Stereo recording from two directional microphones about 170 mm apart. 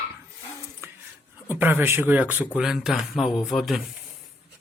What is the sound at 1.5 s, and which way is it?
Speech, 10° right (ahead or behind).